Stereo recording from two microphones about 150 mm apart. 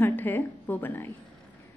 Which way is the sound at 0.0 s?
15° left (ahead or behind).